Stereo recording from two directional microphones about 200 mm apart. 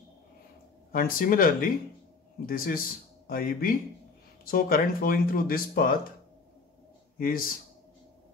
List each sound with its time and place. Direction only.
0.9 s speech: 45° left (ahead or behind)
7.2 s speech: 45° left (ahead or behind)